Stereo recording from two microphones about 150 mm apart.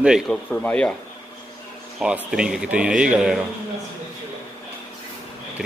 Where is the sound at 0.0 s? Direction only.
5° right (ahead or behind).